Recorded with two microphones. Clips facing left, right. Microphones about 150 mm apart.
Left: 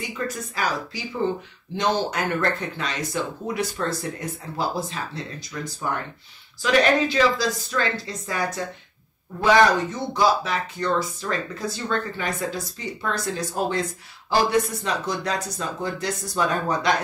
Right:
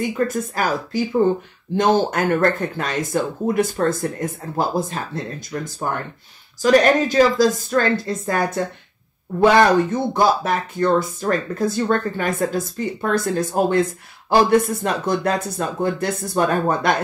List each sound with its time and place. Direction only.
0.0 s speech: 50° right (ahead or behind)